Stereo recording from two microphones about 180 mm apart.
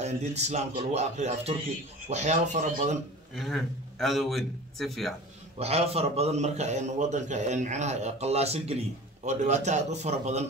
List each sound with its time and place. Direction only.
0.0 s a man's voice: 40° right (ahead or behind)
3.3 s a man's voice: centre (ahead or behind)
5.6 s a man's voice: 35° right (ahead or behind)